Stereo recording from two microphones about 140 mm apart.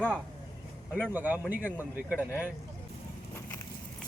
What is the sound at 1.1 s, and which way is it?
Speech, 10° right (ahead or behind).